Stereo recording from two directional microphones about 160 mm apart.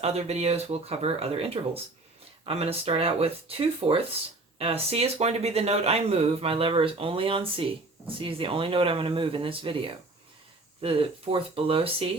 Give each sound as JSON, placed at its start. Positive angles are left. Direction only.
{"t": 0.0, "sound": "speech", "side_deg": -40}